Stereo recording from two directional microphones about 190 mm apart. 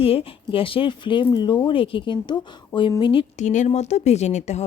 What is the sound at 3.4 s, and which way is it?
Speech, 40° left (ahead or behind).